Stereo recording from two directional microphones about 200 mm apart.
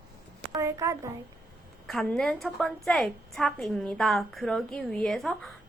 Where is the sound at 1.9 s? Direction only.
Centre (ahead or behind).